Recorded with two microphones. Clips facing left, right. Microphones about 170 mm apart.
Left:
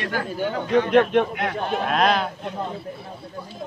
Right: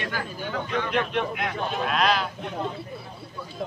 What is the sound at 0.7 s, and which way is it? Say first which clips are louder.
A man's voice: left 10 dB; 50° left (ahead or behind).